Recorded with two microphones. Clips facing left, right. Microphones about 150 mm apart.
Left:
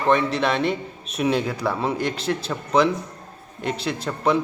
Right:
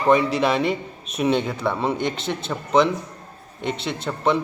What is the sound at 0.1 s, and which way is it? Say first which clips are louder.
Speech: right 2 dB; 5° right (ahead or behind).